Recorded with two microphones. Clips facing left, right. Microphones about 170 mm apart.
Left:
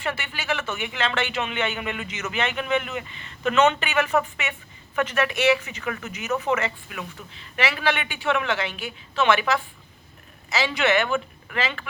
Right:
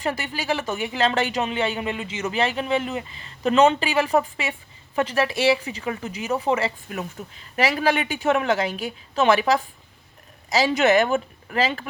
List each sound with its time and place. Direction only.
0.0 s speech: 35° right (ahead or behind)